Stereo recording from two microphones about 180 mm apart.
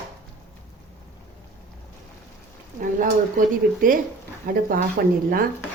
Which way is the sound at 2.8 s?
50° right (ahead or behind).